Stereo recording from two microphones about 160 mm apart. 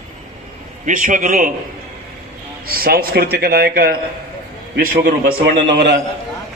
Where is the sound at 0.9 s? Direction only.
55° right (ahead or behind).